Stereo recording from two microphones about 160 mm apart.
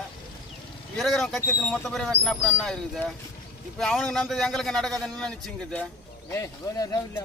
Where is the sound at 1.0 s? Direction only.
Centre (ahead or behind).